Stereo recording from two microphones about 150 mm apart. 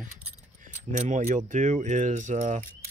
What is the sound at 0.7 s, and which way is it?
Speech, 55° right (ahead or behind).